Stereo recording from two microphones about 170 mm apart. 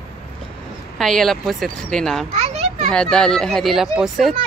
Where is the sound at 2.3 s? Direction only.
40° right (ahead or behind).